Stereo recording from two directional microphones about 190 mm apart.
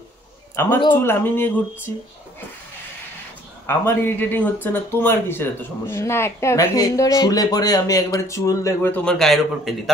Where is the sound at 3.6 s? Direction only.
10° left (ahead or behind).